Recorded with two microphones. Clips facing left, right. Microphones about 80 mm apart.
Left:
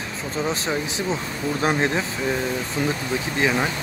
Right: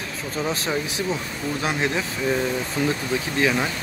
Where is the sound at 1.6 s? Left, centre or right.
Left.